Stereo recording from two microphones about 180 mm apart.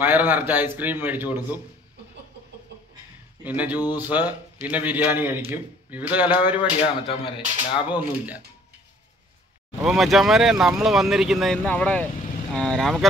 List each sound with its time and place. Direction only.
0.0 s a man's voice: 10° right (ahead or behind)
3.4 s a man's voice: 10° right (ahead or behind)
6.8 s speech: 30° left (ahead or behind)
7.8 s a man's voice: 10° right (ahead or behind)
9.8 s speech: centre (ahead or behind)